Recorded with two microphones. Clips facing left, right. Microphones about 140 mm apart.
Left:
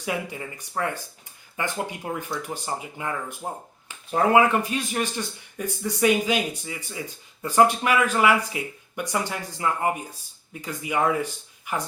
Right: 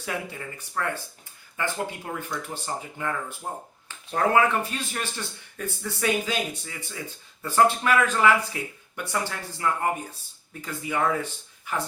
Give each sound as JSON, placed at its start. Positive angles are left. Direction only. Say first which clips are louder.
{"t": 0.0, "sound": "speech", "louder": "left 3 dB", "side_deg": 15}